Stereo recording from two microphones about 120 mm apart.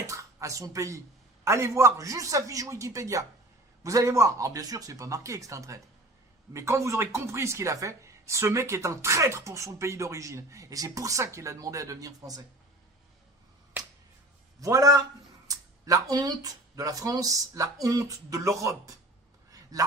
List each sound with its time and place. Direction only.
0.1 s speech: 25° right (ahead or behind)
14.6 s speech: 30° right (ahead or behind)
19.5 s a sound: 30° right (ahead or behind)